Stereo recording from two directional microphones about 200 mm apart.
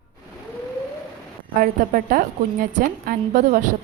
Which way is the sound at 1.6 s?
45° right (ahead or behind).